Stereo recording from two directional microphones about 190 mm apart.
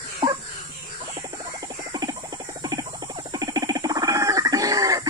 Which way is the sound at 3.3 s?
20° right (ahead or behind).